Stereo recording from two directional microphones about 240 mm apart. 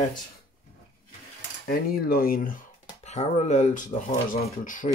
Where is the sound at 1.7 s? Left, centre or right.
Left.